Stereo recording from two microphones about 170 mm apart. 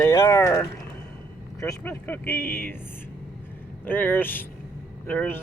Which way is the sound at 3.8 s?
10° left (ahead or behind).